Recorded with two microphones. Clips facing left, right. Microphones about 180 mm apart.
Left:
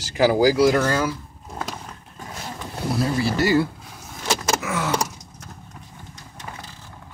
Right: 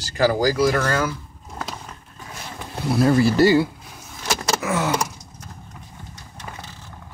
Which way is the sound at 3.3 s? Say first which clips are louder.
Right 4 dB; 30° right (ahead or behind).